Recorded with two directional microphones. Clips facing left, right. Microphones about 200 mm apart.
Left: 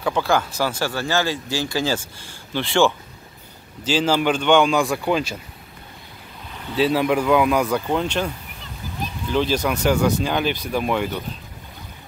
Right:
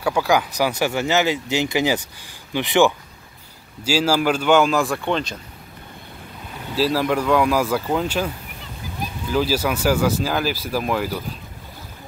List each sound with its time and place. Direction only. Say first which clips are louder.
0.0 s speech: right 1 dB; 10° right (ahead or behind); by 5.4 s 5° left (ahead or behind)
6.7 s speech: left 1 dB; centre (ahead or behind)
9.3 s speech: even; 5° right (ahead or behind)